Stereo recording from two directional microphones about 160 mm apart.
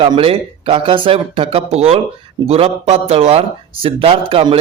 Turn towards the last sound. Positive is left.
turn(degrees=-35)  # may be behind; listen again after turning